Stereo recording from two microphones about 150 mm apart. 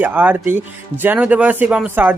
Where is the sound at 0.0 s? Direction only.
10° right (ahead or behind).